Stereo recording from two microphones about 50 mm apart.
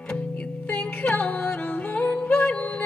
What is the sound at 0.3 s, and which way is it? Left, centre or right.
Music, left.